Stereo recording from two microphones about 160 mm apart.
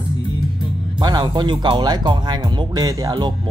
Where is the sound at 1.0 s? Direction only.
25° right (ahead or behind).